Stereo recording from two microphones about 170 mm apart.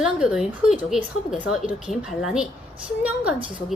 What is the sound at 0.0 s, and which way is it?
A woman's voice, 5° right (ahead or behind).